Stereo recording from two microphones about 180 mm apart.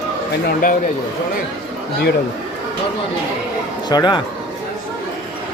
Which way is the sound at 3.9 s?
25° left (ahead or behind).